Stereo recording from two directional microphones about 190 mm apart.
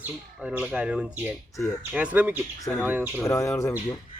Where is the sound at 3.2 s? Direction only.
15° left (ahead or behind).